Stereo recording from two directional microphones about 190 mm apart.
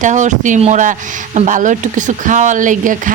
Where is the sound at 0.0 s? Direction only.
40° right (ahead or behind).